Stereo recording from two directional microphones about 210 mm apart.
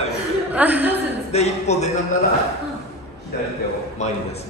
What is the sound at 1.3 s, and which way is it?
Speech, 30° left (ahead or behind).